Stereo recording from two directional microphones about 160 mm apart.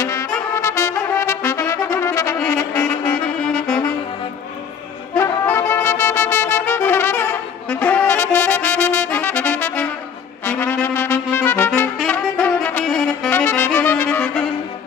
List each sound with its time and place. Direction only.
0.0 s trumpet: 20° left (ahead or behind)
2.3 s saxophone: 15° left (ahead or behind)
5.1 s music: 15° left (ahead or behind)
10.4 s brass instrument: 15° left (ahead or behind)
12.0 s saxophone: 10° left (ahead or behind)